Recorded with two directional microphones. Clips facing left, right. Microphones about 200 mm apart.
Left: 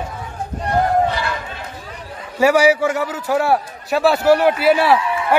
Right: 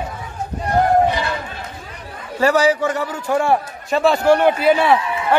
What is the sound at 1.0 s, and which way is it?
Run, 20° right (ahead or behind).